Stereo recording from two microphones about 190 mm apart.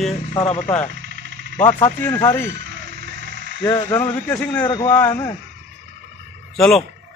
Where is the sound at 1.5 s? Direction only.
10° left (ahead or behind).